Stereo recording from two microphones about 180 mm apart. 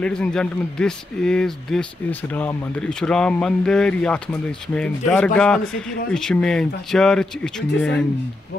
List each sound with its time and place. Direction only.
0.0 s speech: 5° left (ahead or behind)